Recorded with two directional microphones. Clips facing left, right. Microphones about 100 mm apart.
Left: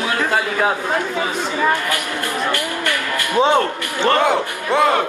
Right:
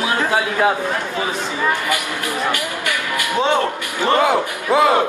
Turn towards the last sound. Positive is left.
turn(degrees=-5)  # may be behind; listen again after turning